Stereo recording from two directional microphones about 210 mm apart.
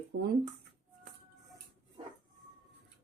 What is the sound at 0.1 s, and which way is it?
Speech, 50° right (ahead or behind).